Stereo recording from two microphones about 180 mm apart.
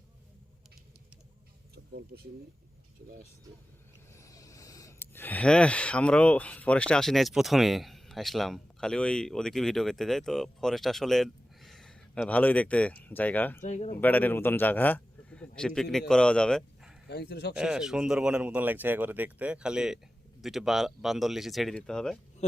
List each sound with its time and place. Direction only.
1.7 s a sound: 65° right (ahead or behind)
4.1 s speech: 15° left (ahead or behind)
13.6 s speech: 40° left (ahead or behind)
14.0 s speech: 10° left (ahead or behind)
17.1 s speech: 65° left (ahead or behind)
17.5 s speech: 5° right (ahead or behind)